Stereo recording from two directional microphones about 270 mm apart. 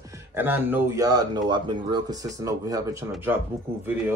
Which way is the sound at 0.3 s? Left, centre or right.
Centre.